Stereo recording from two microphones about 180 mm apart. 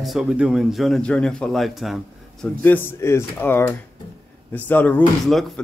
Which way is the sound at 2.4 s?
10° left (ahead or behind).